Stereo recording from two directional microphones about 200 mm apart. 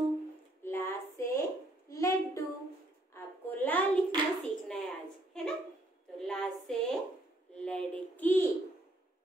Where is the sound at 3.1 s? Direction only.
10° left (ahead or behind).